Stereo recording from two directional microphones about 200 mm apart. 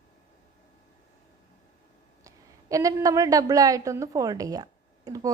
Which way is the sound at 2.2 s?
15° right (ahead or behind).